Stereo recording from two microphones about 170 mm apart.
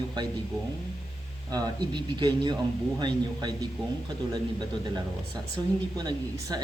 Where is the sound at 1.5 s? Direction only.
25° right (ahead or behind).